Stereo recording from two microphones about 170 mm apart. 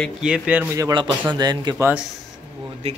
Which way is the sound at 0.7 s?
25° right (ahead or behind).